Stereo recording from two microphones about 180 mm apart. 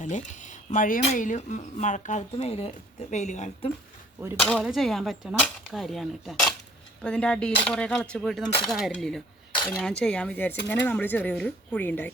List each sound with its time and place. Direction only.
0.0 s speech: 45° left (ahead or behind)
4.4 s speech: 5° left (ahead or behind)